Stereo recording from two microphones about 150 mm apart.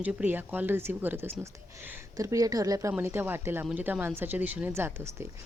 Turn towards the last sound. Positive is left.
turn(degrees=-15)  # may be behind; listen again after turning